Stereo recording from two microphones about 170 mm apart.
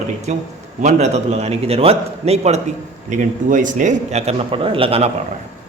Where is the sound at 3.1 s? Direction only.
50° right (ahead or behind).